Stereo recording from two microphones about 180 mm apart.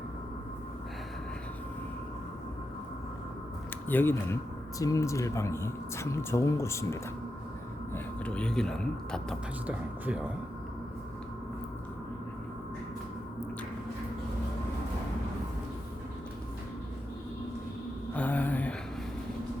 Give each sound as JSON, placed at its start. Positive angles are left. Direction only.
{"t": 3.8, "sound": "speech", "side_deg": 10}
{"t": 9.6, "sound": "speech", "side_deg": -5}
{"t": 18.1, "sound": "a sound", "side_deg": 10}